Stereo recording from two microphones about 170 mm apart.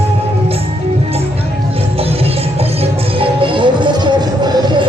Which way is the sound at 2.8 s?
30° right (ahead or behind).